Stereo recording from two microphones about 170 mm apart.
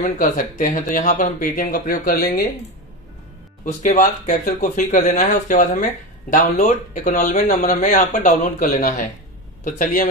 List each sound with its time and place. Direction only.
0.0 s speech: 55° left (ahead or behind)
3.8 s speech: 50° left (ahead or behind)